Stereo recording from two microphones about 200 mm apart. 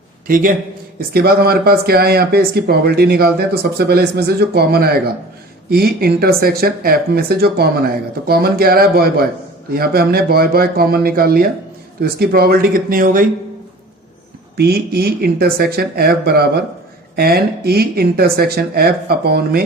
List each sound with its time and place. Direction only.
0.3 s speech: 45° right (ahead or behind)
14.5 s speech: 50° right (ahead or behind)